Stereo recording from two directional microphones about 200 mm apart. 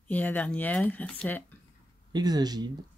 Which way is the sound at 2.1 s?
20° right (ahead or behind).